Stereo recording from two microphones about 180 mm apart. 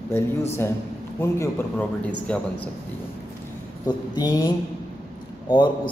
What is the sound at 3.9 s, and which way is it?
A man's voice, 20° left (ahead or behind).